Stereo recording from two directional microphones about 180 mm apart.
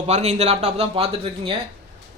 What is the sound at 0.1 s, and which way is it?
Speech, 35° right (ahead or behind).